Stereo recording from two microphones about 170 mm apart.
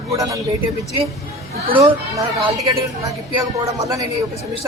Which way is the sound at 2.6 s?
20° right (ahead or behind).